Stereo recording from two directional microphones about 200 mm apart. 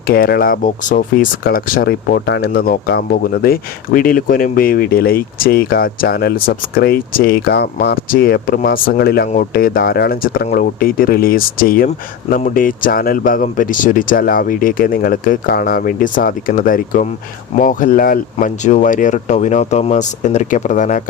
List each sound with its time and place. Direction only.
0.0 s speech: 50° left (ahead or behind)